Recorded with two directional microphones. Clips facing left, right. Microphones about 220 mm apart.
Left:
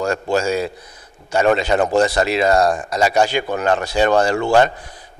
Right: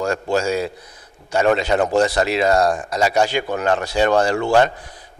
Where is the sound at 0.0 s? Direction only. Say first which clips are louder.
Left 1 dB; 20° left (ahead or behind).